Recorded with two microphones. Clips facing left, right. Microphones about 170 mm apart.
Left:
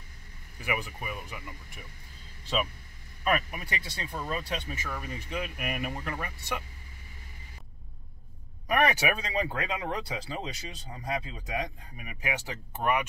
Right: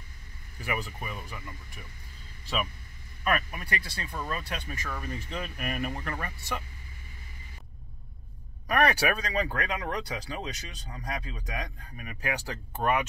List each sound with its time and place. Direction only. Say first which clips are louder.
0.6 s speech: even; 15° left (ahead or behind)
3.3 s speech: even; 25° left (ahead or behind)
4.8 s speech: right 1 dB; 10° left (ahead or behind)
8.6 s speech: right 1 dB; 20° left (ahead or behind)